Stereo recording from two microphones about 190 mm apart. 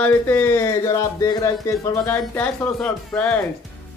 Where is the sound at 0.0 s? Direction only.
10° left (ahead or behind).